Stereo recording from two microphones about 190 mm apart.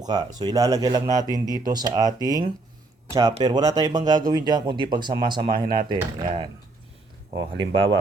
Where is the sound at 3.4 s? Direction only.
20° right (ahead or behind).